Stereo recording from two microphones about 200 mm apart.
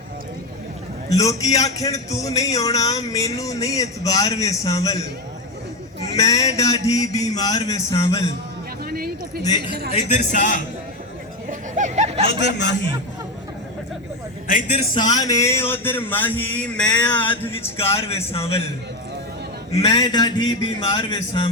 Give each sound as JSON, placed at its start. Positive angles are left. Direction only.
{"t": 1.1, "sound": "speech", "side_deg": 15}
{"t": 6.1, "sound": "speech", "side_deg": 15}
{"t": 8.9, "sound": "a sound", "side_deg": -50}
{"t": 9.4, "sound": "a man's voice", "side_deg": 20}
{"t": 9.9, "sound": "speech", "side_deg": 35}
{"t": 11.4, "sound": "a sound", "side_deg": -40}
{"t": 12.4, "sound": "a man's voice", "side_deg": 60}
{"t": 14.4, "sound": "speech", "side_deg": 40}
{"t": 14.9, "sound": "speech", "side_deg": 20}
{"t": 17.7, "sound": "a man's voice", "side_deg": 30}
{"t": 19.8, "sound": "a man's voice", "side_deg": 20}